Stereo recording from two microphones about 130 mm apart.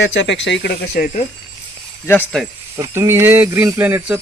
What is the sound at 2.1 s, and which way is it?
Speech, 20° left (ahead or behind).